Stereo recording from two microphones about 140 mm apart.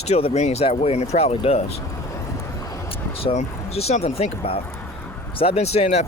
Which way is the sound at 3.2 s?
45° left (ahead or behind).